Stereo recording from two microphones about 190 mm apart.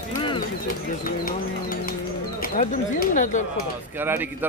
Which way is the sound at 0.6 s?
45° left (ahead or behind).